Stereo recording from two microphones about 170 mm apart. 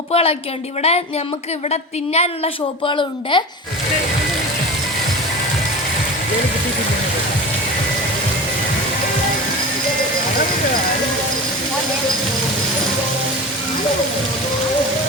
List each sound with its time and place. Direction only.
0.1 s a woman's voice: 35° left (ahead or behind)